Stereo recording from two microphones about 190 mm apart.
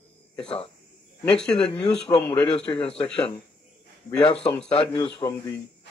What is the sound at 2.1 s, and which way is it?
Speech, 10° left (ahead or behind).